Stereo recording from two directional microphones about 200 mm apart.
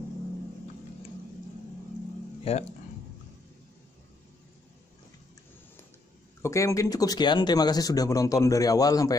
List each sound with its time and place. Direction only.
2.5 s speech: 30° left (ahead or behind)
6.4 s speech: 15° left (ahead or behind)